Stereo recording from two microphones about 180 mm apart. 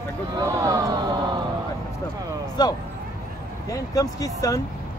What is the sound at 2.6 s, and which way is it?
Speech, 25° left (ahead or behind).